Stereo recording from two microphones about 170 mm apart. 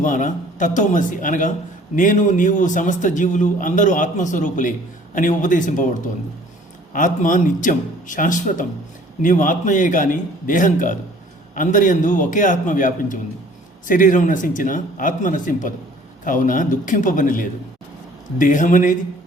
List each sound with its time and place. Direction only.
0.0 s a man's voice: 50° left (ahead or behind)